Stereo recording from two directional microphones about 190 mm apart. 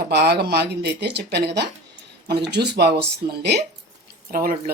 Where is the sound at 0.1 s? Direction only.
60° right (ahead or behind).